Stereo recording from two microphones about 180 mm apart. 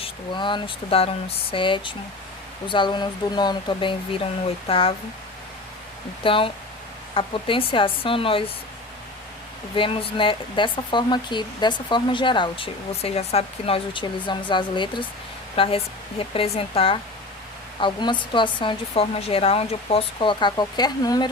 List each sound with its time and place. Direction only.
0.0 s speech: 25° left (ahead or behind)
6.2 s speech: 30° left (ahead or behind)
9.7 s speech: 30° left (ahead or behind)